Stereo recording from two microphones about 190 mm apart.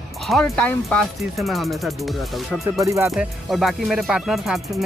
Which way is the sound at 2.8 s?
15° right (ahead or behind).